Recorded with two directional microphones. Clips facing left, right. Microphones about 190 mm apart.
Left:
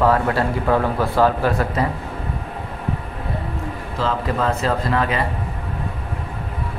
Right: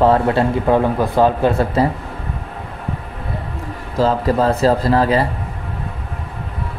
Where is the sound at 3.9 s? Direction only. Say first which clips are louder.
Right 7 dB; 35° right (ahead or behind).